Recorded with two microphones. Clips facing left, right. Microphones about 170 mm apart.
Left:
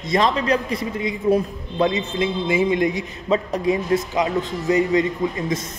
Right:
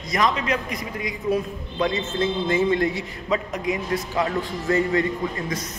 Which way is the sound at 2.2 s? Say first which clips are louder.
Even; 10° left (ahead or behind).